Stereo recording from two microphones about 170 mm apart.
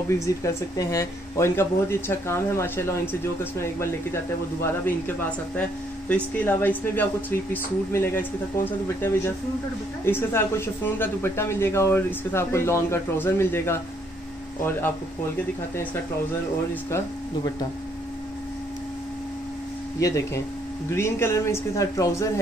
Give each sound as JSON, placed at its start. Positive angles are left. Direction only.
{"t": 0.3, "sound": "speech", "side_deg": 20}
{"t": 6.0, "sound": "speech", "side_deg": 10}
{"t": 20.0, "sound": "speech", "side_deg": 20}